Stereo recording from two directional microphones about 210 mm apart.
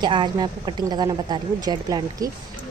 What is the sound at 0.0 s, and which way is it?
A woman's voice, 20° right (ahead or behind).